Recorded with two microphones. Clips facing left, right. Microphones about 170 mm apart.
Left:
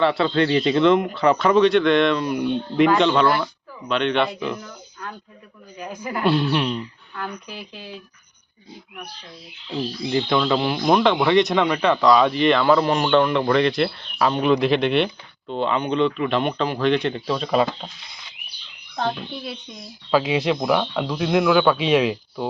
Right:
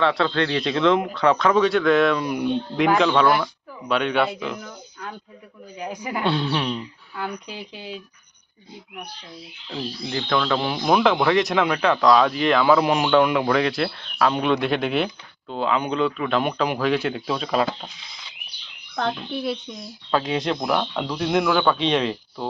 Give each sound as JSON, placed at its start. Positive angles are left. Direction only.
{"t": 0.0, "sound": "speech", "side_deg": 5}
{"t": 6.2, "sound": "speech", "side_deg": 5}
{"t": 7.2, "sound": "speech", "side_deg": -15}
{"t": 9.6, "sound": "speech", "side_deg": 15}
{"t": 20.1, "sound": "speech", "side_deg": 5}